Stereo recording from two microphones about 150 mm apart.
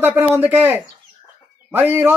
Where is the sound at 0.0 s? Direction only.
10° right (ahead or behind).